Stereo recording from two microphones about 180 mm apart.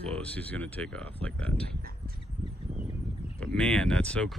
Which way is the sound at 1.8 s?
55° right (ahead or behind).